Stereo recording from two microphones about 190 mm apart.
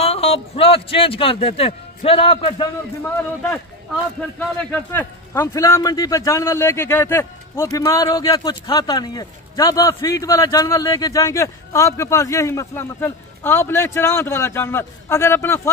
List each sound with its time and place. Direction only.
0.0 s speech: 30° left (ahead or behind)
3.0 s speech: 10° left (ahead or behind)